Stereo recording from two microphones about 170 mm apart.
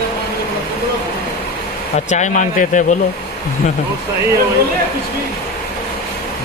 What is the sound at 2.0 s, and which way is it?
Speech, 45° left (ahead or behind).